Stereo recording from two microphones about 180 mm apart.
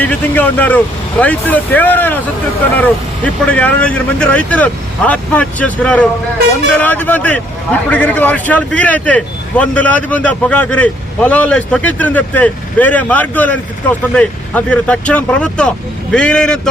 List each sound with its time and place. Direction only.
0.0 s a man's voice: 10° left (ahead or behind)